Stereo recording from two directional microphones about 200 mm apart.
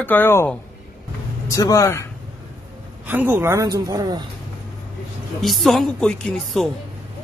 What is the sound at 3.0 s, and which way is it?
A woman's voice, 10° right (ahead or behind).